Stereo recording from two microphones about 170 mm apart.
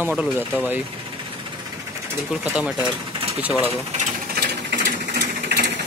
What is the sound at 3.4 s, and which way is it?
Speech, 10° right (ahead or behind).